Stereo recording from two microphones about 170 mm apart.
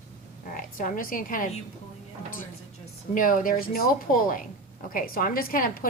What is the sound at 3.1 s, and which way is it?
A woman's voice, 55° left (ahead or behind).